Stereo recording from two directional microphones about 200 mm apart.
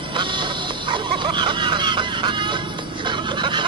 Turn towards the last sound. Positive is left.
turn(degrees=-25)  # may be behind; listen again after turning